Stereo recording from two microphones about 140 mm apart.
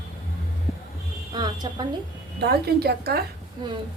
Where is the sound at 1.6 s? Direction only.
30° right (ahead or behind).